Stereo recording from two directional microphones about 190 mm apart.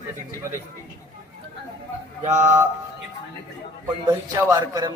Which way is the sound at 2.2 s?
40° right (ahead or behind).